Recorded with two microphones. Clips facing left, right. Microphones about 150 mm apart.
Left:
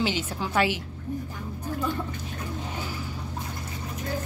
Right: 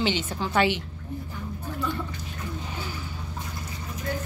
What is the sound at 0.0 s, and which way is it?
Speech, 5° left (ahead or behind).